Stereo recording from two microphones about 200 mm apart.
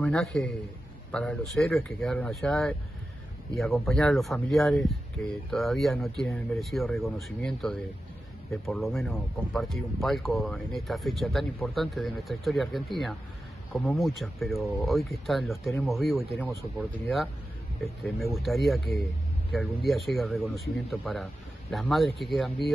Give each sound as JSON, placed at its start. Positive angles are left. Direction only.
{"t": 0.0, "sound": "speech", "side_deg": 0}
{"t": 18.0, "sound": "speech", "side_deg": 0}